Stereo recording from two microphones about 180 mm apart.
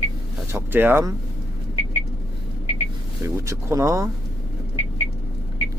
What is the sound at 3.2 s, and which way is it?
Speech, 15° right (ahead or behind).